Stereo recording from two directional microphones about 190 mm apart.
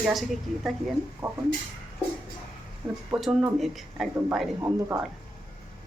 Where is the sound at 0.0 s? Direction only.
Centre (ahead or behind).